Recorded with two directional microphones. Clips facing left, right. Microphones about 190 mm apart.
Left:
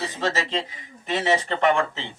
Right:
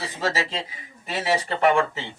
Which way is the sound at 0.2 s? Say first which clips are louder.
Even; 10° right (ahead or behind).